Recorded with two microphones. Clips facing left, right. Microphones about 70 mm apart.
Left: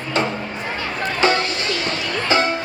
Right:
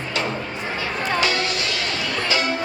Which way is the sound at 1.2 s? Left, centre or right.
Left.